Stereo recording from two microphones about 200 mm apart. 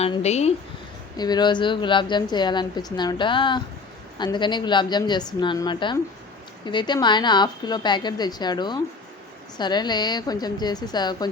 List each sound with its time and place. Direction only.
0.0 s speech: 30° left (ahead or behind)
1.1 s a woman's voice: 20° left (ahead or behind)